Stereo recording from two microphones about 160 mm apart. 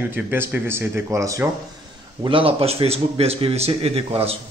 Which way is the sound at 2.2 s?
35° right (ahead or behind).